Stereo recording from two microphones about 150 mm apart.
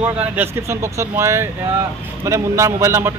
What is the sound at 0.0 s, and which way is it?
Speech, 15° right (ahead or behind).